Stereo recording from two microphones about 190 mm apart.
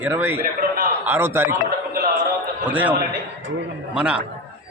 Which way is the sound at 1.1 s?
10° right (ahead or behind).